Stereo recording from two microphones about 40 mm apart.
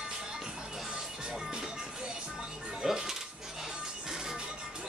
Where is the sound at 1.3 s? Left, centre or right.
Centre.